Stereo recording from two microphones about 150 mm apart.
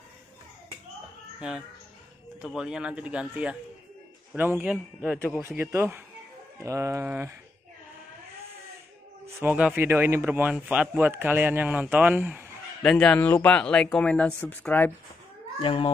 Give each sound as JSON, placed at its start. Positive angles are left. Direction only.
{"t": 1.4, "sound": "a man's voice", "side_deg": -5}
{"t": 5.6, "sound": "a man's voice", "side_deg": -15}
{"t": 9.4, "sound": "a man's voice", "side_deg": -10}
{"t": 12.8, "sound": "speech", "side_deg": 5}
{"t": 15.6, "sound": "a child's voice", "side_deg": 35}